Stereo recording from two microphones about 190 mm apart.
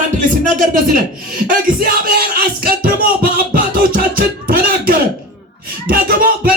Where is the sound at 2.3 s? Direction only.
50° right (ahead or behind).